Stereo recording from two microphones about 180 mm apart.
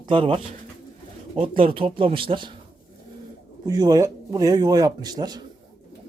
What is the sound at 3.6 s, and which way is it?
A man's voice, 20° right (ahead or behind).